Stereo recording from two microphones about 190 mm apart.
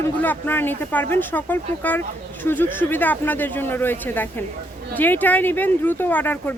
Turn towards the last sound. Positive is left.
turn(degrees=10)  # may be behind; listen again after turning